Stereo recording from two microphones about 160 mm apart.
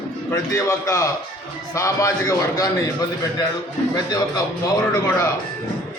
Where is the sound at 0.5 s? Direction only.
20° left (ahead or behind).